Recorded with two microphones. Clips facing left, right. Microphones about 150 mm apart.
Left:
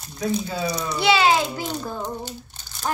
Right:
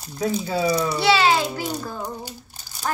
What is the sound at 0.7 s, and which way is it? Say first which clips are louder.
Speech: right 6 dB; 10° right (ahead or behind).